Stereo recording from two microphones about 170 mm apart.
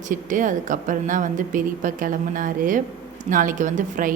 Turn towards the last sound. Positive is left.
turn(degrees=-50)  # may be behind; listen again after turning